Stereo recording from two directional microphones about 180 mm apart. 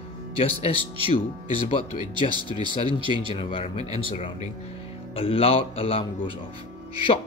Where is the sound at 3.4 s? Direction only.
30° left (ahead or behind).